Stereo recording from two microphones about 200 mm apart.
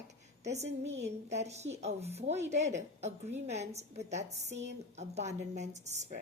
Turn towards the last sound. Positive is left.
turn(degrees=-35)  # may be behind; listen again after turning